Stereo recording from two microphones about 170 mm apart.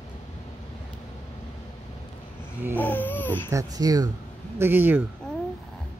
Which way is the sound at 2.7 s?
10° left (ahead or behind).